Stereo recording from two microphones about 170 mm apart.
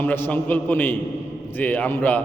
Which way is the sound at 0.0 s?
10° left (ahead or behind).